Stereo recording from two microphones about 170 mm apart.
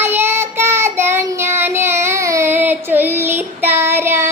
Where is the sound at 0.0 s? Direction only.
15° right (ahead or behind).